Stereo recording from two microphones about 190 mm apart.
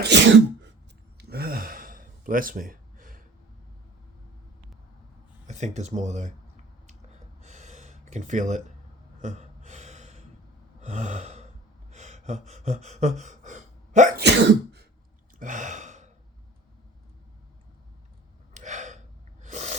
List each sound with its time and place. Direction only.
0.1 s throat clearing: 65° right (ahead or behind)
1.2 s gasp: 55° right (ahead or behind)
5.5 s speech: 35° right (ahead or behind)
7.4 s gasp: 40° right (ahead or behind)
11.9 s a sound: 35° right (ahead or behind)
14.2 s cough: 60° right (ahead or behind)
15.4 s sigh: 40° right (ahead or behind)
18.5 s gasp: 40° right (ahead or behind)
19.4 s a sound: 35° right (ahead or behind)